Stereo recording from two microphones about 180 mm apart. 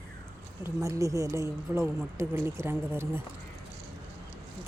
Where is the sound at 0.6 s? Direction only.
15° right (ahead or behind).